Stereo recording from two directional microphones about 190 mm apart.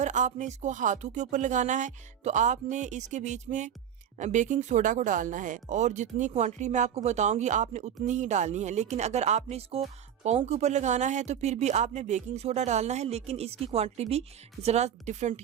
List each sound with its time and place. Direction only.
0.0 s speech: 40° right (ahead or behind)